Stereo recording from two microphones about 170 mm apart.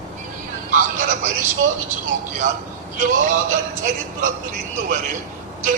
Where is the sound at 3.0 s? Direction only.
50° right (ahead or behind).